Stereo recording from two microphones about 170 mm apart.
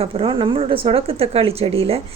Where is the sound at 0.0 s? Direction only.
35° right (ahead or behind).